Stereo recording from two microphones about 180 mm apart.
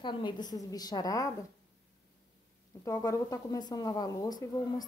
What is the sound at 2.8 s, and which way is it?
Speech, 20° left (ahead or behind).